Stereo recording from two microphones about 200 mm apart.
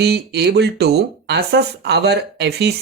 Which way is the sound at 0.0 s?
55° right (ahead or behind).